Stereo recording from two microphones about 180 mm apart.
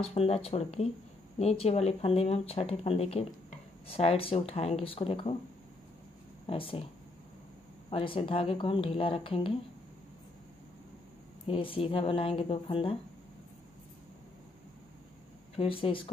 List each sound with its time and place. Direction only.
0.0 s speech: 35° left (ahead or behind)
6.4 s speech: 30° left (ahead or behind)
7.9 s speech: 30° left (ahead or behind)
11.4 s speech: 30° left (ahead or behind)
15.5 s speech: 30° left (ahead or behind)